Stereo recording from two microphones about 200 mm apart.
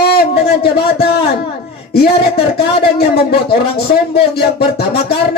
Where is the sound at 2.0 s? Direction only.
50° left (ahead or behind).